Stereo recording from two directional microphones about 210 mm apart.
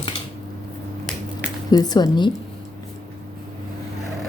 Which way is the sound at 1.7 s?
20° left (ahead or behind).